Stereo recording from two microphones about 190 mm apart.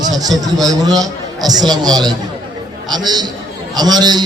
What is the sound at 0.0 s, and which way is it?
A man's voice, 20° right (ahead or behind).